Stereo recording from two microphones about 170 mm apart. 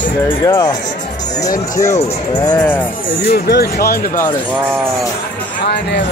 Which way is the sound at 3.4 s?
65° left (ahead or behind).